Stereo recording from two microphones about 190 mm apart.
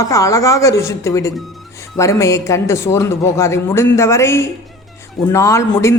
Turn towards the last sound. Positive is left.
turn(degrees=15)  # may be behind; listen again after turning